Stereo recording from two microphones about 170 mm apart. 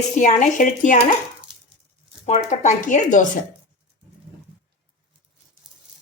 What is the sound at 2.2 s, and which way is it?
Speech, 45° left (ahead or behind).